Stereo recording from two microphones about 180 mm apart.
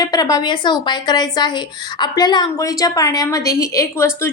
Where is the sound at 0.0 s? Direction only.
20° left (ahead or behind).